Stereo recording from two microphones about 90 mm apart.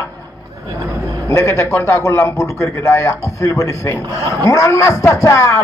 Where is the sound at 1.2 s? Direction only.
30° left (ahead or behind).